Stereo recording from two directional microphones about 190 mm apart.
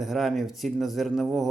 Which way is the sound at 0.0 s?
Centre (ahead or behind).